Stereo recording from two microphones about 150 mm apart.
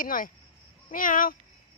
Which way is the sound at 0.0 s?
65° left (ahead or behind).